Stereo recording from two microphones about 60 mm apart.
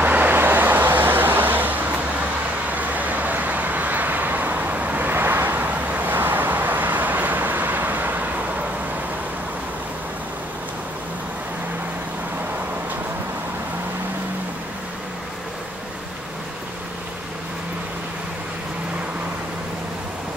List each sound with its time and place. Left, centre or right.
0.0 s vehicle: right